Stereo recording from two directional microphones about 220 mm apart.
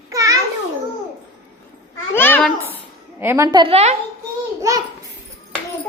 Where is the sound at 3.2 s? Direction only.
10° right (ahead or behind); by 4.0 s 30° right (ahead or behind).